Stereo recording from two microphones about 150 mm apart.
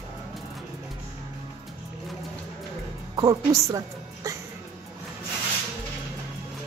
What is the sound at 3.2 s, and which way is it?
A woman's voice, 25° right (ahead or behind).